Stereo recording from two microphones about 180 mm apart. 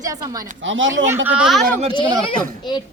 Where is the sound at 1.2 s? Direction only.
5° right (ahead or behind).